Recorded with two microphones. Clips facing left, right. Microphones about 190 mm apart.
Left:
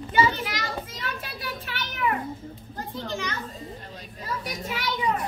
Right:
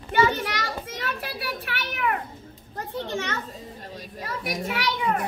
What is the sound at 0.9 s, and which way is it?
A child's voice, 65° right (ahead or behind).